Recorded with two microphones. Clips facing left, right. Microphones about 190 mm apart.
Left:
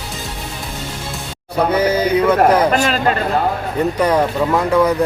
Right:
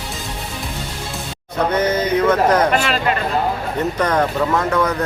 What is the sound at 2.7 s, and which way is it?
Speech, 40° left (ahead or behind).